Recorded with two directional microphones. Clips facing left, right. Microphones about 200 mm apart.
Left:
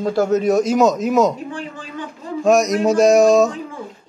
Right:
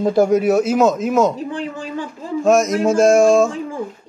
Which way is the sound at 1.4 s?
35° right (ahead or behind).